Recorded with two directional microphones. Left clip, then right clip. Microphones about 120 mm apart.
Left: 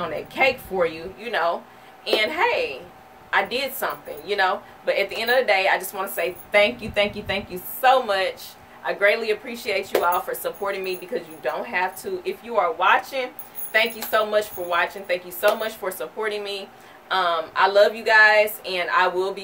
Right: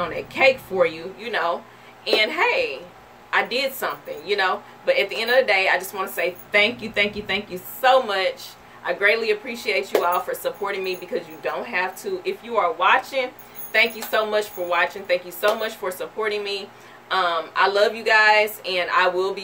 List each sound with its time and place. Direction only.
0.0 s speech: 20° left (ahead or behind)